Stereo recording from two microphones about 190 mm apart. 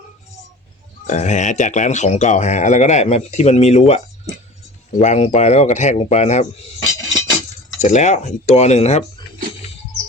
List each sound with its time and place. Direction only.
1.0 s speech: 40° left (ahead or behind)
7.8 s speech: 40° left (ahead or behind)